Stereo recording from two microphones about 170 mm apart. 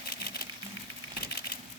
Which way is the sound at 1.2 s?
65° left (ahead or behind).